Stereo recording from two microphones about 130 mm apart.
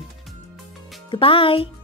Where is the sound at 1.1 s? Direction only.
45° left (ahead or behind).